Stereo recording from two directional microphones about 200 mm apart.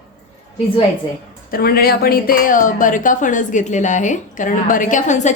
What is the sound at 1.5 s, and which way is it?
Speech, 50° left (ahead or behind).